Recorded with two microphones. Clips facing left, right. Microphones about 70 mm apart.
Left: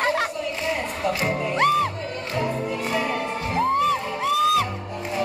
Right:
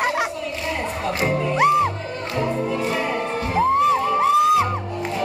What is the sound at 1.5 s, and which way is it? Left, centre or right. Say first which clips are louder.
Music: right 3 dB; centre.